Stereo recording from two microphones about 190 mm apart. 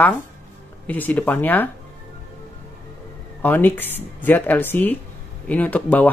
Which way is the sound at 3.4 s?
10° left (ahead or behind).